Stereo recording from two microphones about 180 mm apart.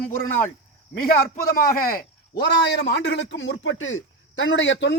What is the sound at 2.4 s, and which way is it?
A man's voice, 75° left (ahead or behind).